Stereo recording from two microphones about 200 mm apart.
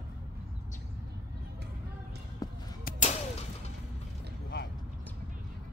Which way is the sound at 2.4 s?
20° left (ahead or behind).